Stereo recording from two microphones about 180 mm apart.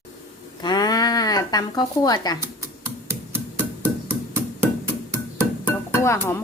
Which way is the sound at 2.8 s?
10° right (ahead or behind).